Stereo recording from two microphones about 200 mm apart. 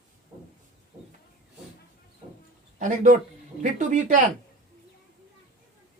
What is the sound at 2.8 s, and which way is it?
Speech, 35° right (ahead or behind).